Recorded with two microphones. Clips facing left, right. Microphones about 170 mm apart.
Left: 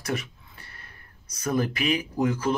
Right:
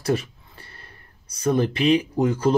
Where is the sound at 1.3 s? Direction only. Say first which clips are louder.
Right 5 dB; 30° right (ahead or behind).